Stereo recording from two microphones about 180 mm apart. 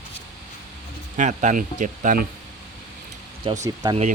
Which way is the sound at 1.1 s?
45° right (ahead or behind).